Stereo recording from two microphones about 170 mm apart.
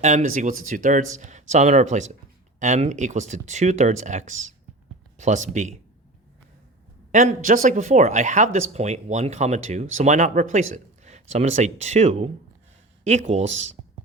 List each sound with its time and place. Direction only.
0.0 s speech: 45° right (ahead or behind)
7.1 s speech: 50° right (ahead or behind)